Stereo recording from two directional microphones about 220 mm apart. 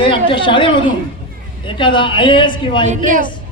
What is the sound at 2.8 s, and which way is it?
Speech, 35° right (ahead or behind).